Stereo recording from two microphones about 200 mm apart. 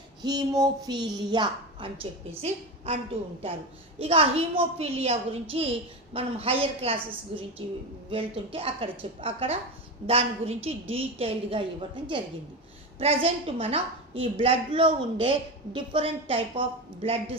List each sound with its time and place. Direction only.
0.2 s a woman's voice: 20° right (ahead or behind)
13.0 s a woman's voice: 30° right (ahead or behind)